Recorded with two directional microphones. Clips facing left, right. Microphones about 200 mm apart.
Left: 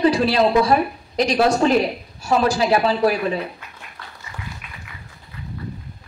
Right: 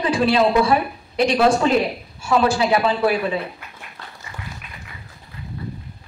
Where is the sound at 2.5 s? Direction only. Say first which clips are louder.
Left 1 dB; 35° left (ahead or behind).